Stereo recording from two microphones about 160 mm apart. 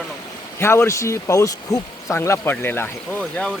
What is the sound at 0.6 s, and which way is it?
Speech, 15° left (ahead or behind).